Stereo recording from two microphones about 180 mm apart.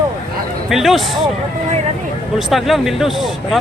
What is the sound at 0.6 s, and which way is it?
Speech, centre (ahead or behind).